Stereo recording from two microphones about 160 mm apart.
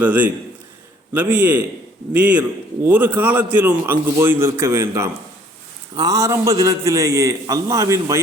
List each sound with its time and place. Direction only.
0.0 s a man's voice: 10° right (ahead or behind)